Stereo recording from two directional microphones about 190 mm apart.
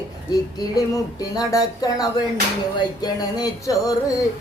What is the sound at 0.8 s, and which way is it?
Speech, 20° left (ahead or behind).